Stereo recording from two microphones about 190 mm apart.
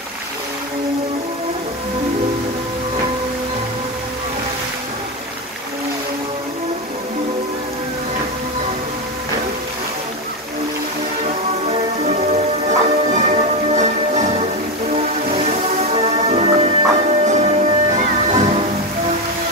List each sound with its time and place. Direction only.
11.6 s music: 35° right (ahead or behind)
12.6 s train: 40° right (ahead or behind)
15.3 s music: 35° right (ahead or behind)